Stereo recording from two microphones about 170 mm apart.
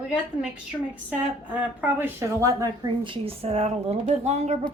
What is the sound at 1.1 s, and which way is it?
A woman's voice, 10° right (ahead or behind).